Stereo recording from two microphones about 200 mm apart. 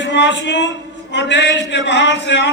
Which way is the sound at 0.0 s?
65° left (ahead or behind).